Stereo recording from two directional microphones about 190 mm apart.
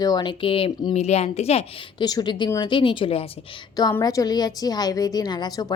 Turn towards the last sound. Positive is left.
turn(degrees=20)  # may be behind; listen again after turning